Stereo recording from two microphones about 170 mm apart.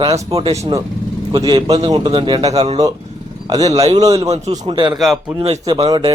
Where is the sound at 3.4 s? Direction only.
25° right (ahead or behind).